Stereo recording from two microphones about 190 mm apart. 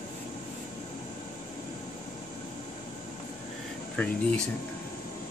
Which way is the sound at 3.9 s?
5° left (ahead or behind).